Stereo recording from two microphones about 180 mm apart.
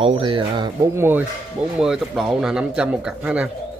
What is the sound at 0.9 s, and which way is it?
Speech, 10° right (ahead or behind).